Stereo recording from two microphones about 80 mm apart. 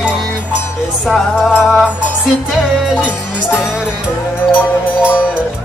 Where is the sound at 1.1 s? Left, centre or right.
Centre.